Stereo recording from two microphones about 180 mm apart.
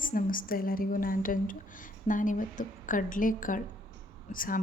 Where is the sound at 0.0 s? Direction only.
50° left (ahead or behind).